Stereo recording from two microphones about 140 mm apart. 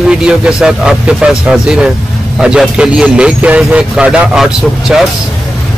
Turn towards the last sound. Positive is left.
turn(degrees=-5)  # may be behind; listen again after turning